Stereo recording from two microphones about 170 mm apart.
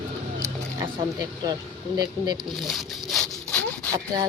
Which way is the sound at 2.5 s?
Centre (ahead or behind).